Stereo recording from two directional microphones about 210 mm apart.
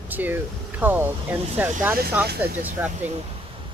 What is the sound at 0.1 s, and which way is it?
Speech, 10° right (ahead or behind).